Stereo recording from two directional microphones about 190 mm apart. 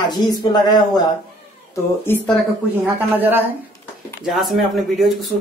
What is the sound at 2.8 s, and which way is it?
A man's voice, 10° right (ahead or behind).